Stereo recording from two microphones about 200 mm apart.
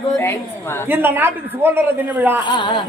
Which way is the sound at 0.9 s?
10° right (ahead or behind).